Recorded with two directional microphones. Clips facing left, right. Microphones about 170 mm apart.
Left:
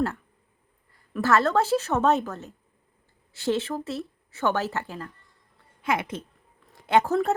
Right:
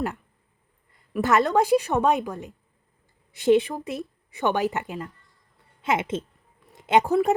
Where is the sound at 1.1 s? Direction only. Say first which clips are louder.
Right 1 dB; 15° right (ahead or behind).